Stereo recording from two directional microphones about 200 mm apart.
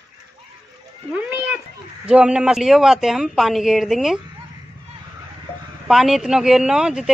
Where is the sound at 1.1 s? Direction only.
5° right (ahead or behind).